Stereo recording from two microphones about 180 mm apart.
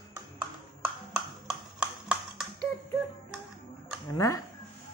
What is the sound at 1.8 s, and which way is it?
Horse, 5° right (ahead or behind).